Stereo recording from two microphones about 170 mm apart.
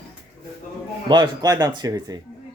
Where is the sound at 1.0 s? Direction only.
25° right (ahead or behind).